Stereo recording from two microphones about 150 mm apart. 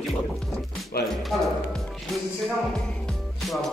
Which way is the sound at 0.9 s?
90° left.